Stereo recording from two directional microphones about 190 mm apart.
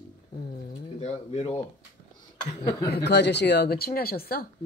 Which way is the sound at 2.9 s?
60° left (ahead or behind).